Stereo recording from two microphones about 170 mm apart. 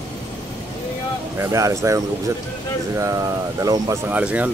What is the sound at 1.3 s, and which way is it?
Speech, 15° right (ahead or behind).